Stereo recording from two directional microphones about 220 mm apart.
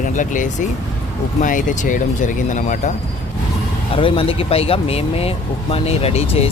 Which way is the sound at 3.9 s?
25° left (ahead or behind).